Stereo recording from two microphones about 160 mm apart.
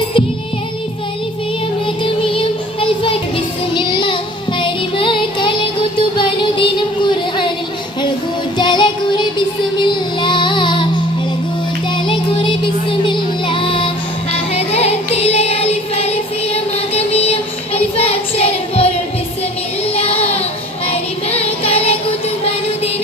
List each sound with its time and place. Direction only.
2.3 s child singing: 35° left (ahead or behind)
8.5 s music: 30° left (ahead or behind)
12.0 s music: 30° left (ahead or behind)
19.9 s child singing: 40° left (ahead or behind)